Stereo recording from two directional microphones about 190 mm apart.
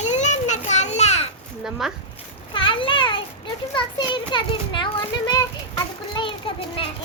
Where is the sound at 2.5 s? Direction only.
25° left (ahead or behind).